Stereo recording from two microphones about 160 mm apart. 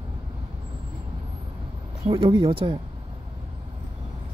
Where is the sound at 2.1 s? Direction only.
30° right (ahead or behind).